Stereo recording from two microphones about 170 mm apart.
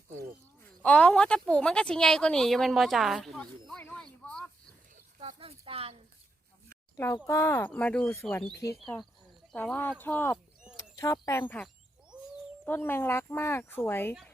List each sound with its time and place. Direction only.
0.8 s speech: 10° left (ahead or behind)
5.2 s speech: 35° right (ahead or behind)
6.9 s speech: 15° left (ahead or behind)
8.5 s speech: 20° left (ahead or behind)
9.5 s speech: 5° left (ahead or behind)
10.3 s a sound: 5° right (ahead or behind)
10.9 s speech: 15° left (ahead or behind)